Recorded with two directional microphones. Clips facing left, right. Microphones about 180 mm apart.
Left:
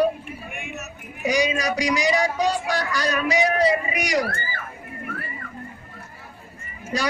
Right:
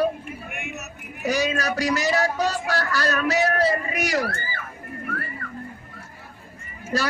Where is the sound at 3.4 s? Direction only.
15° left (ahead or behind).